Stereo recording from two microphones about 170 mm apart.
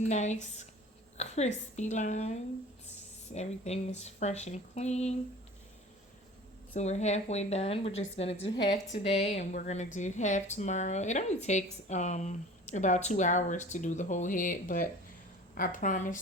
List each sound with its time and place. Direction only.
0.0 s speech: 45° left (ahead or behind)
6.7 s speech: 40° left (ahead or behind)